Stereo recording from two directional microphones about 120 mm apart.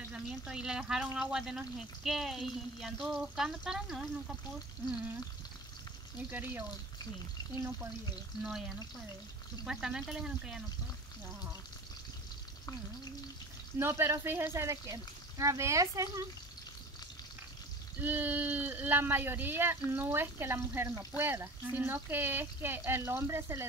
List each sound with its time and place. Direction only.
0.1 s speech: 5° right (ahead or behind)
6.3 s speech: 15° right (ahead or behind)
9.7 s speech: 5° right (ahead or behind)
13.7 s speech: 20° right (ahead or behind)
18.0 s speech: 15° right (ahead or behind)